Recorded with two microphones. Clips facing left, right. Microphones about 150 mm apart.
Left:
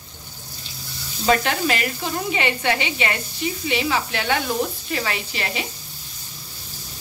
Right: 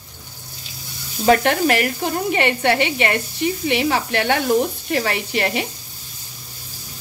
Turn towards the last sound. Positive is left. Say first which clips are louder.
# right 6 dB
turn(degrees=-55)  # may be behind; listen again after turning